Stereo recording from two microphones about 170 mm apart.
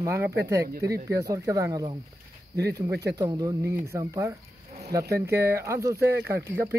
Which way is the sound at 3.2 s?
20° right (ahead or behind).